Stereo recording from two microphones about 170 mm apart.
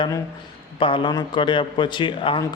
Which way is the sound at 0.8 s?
30° left (ahead or behind).